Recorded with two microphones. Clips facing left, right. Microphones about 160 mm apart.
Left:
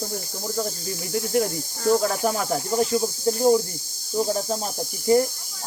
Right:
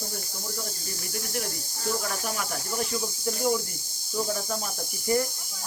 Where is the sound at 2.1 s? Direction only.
35° left (ahead or behind).